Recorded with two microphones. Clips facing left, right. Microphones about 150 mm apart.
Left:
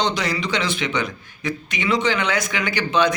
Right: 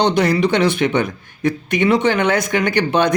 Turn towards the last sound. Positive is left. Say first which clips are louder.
# right 4 dB
turn(degrees=-55)  # may be behind; listen again after turning